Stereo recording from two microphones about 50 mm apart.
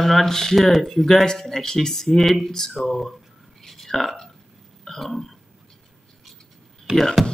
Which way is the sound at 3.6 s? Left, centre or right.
Centre.